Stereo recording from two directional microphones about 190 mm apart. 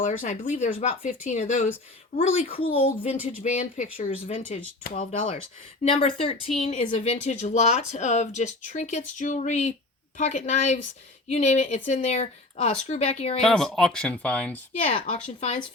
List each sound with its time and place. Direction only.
0.0 s speech: 45° left (ahead or behind)
4.0 s speech: 30° left (ahead or behind)
5.8 s speech: 30° left (ahead or behind)
13.4 s speech: 5° left (ahead or behind)
14.8 s speech: 40° left (ahead or behind)